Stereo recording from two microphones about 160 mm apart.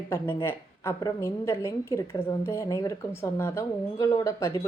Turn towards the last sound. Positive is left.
turn(degrees=20)  # may be behind; listen again after turning